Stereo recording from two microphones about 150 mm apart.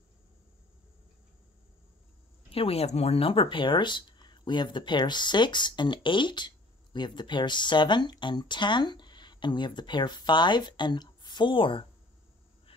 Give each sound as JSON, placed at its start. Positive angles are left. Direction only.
{"t": 2.5, "sound": "speech", "side_deg": 40}